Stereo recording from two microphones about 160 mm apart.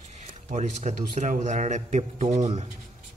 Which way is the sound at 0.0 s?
45° right (ahead or behind).